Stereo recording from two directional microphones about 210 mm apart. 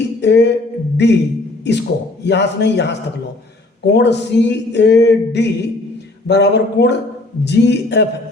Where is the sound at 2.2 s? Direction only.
55° left (ahead or behind).